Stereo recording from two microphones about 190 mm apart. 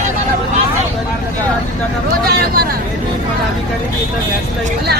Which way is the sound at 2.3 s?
55° right (ahead or behind).